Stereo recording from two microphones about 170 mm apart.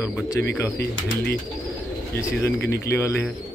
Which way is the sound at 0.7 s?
70° left (ahead or behind).